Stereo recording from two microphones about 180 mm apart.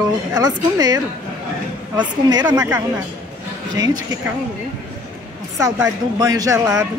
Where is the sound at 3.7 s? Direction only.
20° right (ahead or behind).